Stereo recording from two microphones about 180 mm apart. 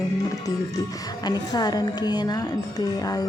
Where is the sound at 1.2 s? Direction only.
25° left (ahead or behind).